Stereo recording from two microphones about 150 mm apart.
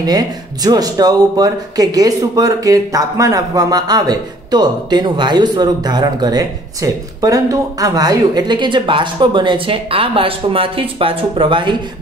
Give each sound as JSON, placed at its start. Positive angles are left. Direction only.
{"t": 0.0, "sound": "speech", "side_deg": -25}